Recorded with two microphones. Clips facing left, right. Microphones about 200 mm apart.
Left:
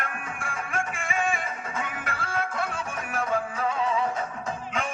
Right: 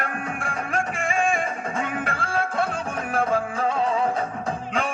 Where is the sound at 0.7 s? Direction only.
35° right (ahead or behind).